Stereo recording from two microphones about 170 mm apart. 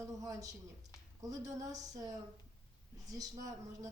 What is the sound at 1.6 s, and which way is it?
Speech, 20° right (ahead or behind).